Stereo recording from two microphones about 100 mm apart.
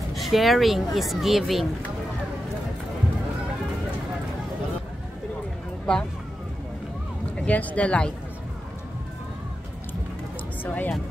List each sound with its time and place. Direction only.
0.1 s speech: centre (ahead or behind)
5.9 s speech: 10° left (ahead or behind)
7.3 s speech: 15° left (ahead or behind)
10.6 s speech: 20° left (ahead or behind)